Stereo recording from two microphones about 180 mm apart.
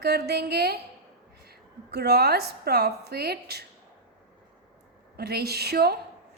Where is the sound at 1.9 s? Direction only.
65° right (ahead or behind).